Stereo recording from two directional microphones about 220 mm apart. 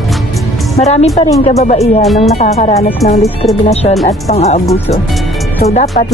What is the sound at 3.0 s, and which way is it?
Speech, 45° left (ahead or behind).